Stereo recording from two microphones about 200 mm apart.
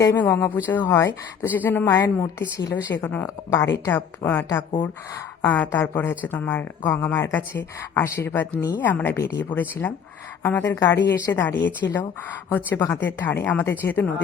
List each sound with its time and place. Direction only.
0.0 s speech: 15° left (ahead or behind)